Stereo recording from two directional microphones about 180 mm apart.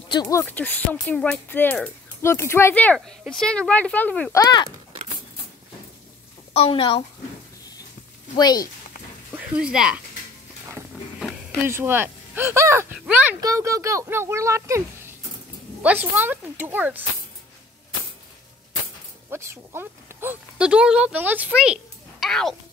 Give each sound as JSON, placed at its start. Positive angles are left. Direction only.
{"t": 0.1, "sound": "speech", "side_deg": 20}
{"t": 4.4, "sound": "speech", "side_deg": 20}
{"t": 6.5, "sound": "a woman's voice", "side_deg": 30}
{"t": 8.4, "sound": "speech", "side_deg": 20}
{"t": 9.3, "sound": "speech", "side_deg": -5}
{"t": 11.1, "sound": "a sound", "side_deg": 0}
{"t": 11.6, "sound": "speech", "side_deg": -10}
{"t": 13.4, "sound": "speech", "side_deg": -20}
{"t": 19.3, "sound": "speech", "side_deg": -15}
{"t": 22.2, "sound": "speech", "side_deg": 0}